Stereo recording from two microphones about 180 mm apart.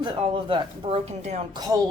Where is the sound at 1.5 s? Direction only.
20° right (ahead or behind).